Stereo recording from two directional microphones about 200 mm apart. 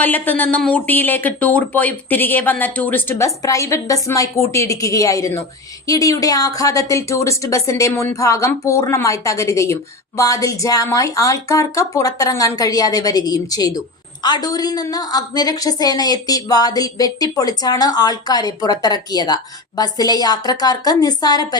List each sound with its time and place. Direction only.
0.0 s speech: 10° left (ahead or behind)